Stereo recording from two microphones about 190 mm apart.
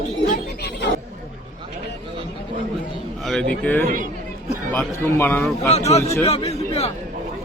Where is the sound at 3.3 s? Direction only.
5° left (ahead or behind).